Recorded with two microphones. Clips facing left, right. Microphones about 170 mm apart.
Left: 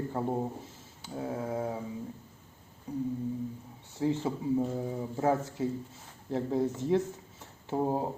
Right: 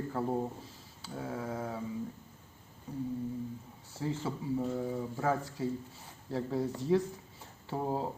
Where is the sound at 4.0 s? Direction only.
20° left (ahead or behind).